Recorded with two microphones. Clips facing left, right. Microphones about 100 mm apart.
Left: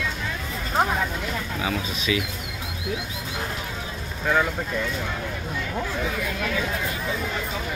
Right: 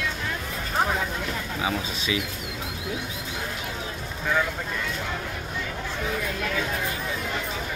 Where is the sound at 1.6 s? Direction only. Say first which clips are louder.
Right 1 dB; 25° right (ahead or behind).